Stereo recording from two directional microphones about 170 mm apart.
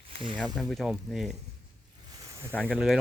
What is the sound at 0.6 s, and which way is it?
Speech, centre (ahead or behind).